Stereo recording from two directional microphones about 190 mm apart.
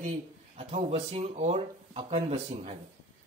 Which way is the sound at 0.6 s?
35° right (ahead or behind).